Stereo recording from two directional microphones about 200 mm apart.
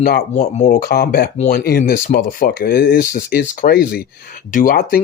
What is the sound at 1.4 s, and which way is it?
Speech, 35° left (ahead or behind).